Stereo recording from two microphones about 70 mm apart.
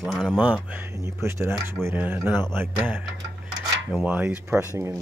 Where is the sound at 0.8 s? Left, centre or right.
Right.